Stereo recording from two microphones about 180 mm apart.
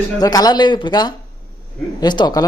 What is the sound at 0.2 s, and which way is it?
Speech, 20° left (ahead or behind).